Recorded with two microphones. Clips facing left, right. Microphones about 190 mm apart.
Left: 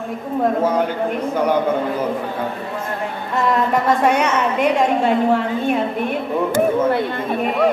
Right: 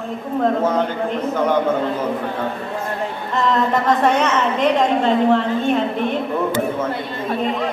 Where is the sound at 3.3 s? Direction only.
10° left (ahead or behind).